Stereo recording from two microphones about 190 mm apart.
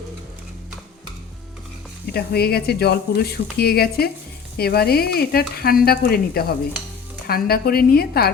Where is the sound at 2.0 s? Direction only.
55° left (ahead or behind).